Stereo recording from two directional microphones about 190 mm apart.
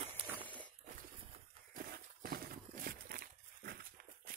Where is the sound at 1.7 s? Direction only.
50° right (ahead or behind).